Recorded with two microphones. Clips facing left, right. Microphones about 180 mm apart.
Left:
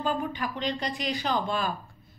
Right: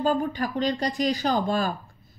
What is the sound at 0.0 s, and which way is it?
A woman's voice, 40° right (ahead or behind).